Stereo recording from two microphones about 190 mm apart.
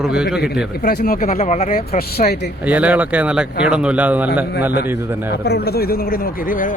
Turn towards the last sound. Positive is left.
turn(degrees=45)  # may be behind; listen again after turning